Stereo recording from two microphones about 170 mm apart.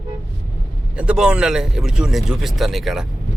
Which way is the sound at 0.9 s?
5° right (ahead or behind).